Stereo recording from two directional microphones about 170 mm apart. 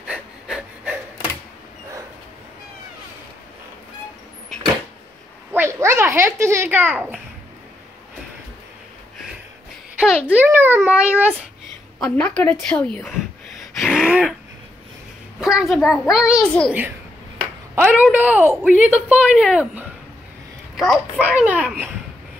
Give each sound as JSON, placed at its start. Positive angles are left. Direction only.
{"t": 0.1, "sound": "a sound", "side_deg": -5}
{"t": 5.5, "sound": "a child's voice", "side_deg": -15}
{"t": 10.2, "sound": "a woman's voice", "side_deg": -10}
{"t": 12.0, "sound": "a woman's voice", "side_deg": 5}
{"t": 13.7, "sound": "gasp", "side_deg": -5}
{"t": 15.4, "sound": "a child's voice", "side_deg": 0}
{"t": 17.7, "sound": "a woman's voice", "side_deg": -10}
{"t": 20.7, "sound": "a sound", "side_deg": 0}
{"t": 21.2, "sound": "a woman's voice", "side_deg": -10}